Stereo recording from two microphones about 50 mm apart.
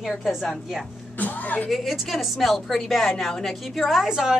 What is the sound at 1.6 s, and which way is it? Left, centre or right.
A woman's voice, centre.